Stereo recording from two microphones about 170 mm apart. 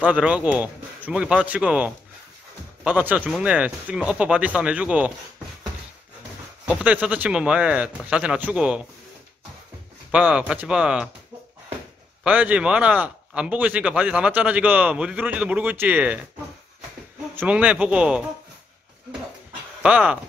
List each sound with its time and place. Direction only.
0.0 s speech: 10° right (ahead or behind)
6.7 s speech: 10° right (ahead or behind)
10.1 s speech: 5° right (ahead or behind)
12.2 s speech: 10° right (ahead or behind)
17.4 s speech: 10° right (ahead or behind)
19.8 s speech: 5° right (ahead or behind)